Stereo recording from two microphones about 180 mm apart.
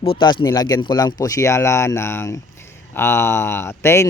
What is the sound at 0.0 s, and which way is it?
Speech, 30° left (ahead or behind).